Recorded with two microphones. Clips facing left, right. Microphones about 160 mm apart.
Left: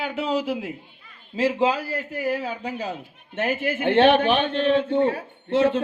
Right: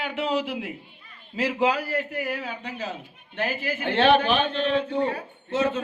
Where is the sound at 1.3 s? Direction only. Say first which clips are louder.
Left 2 dB; 25° left (ahead or behind).